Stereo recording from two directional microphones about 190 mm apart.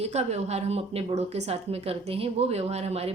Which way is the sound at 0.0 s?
35° right (ahead or behind).